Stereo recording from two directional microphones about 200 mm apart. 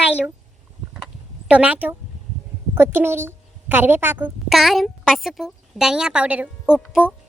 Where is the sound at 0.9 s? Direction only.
5° right (ahead or behind).